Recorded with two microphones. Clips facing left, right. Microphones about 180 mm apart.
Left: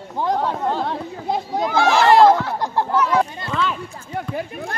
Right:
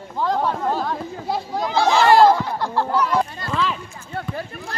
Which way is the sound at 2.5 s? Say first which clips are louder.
Left 1 dB; 15° left (ahead or behind).